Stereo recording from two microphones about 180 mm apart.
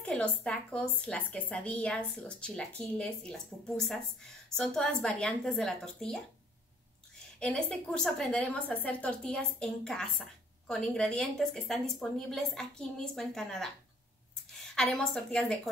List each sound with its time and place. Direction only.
0.0 s a woman's voice: 5° left (ahead or behind)
7.3 s a woman's voice: 5° left (ahead or behind)